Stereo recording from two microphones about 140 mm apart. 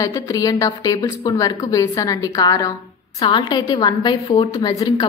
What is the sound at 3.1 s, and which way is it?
A woman's voice, 40° left (ahead or behind).